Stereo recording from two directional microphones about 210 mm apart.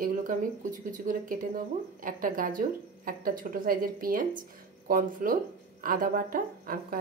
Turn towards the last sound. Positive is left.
turn(degrees=-40)  # may be behind; listen again after turning